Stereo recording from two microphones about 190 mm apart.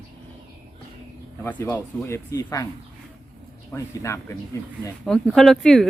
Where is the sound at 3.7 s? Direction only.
15° left (ahead or behind).